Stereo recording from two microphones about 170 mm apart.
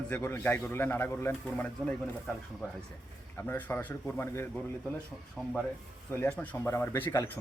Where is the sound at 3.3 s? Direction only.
10° left (ahead or behind).